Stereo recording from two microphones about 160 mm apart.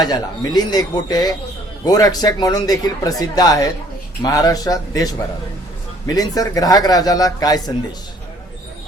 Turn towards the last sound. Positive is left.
turn(degrees=25)  # may be behind; listen again after turning